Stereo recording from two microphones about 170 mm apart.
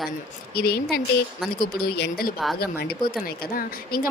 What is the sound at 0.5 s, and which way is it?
Speech, 65° left (ahead or behind).